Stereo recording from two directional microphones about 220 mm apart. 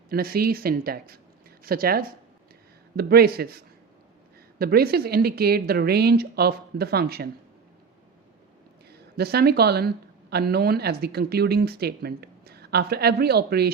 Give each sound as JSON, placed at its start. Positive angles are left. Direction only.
{"t": 0.1, "sound": "speech", "side_deg": -45}
{"t": 8.9, "sound": "a woman's voice", "side_deg": -45}